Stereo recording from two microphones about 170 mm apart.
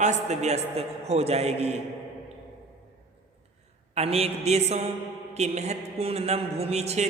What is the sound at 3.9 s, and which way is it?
A man's voice, 35° right (ahead or behind).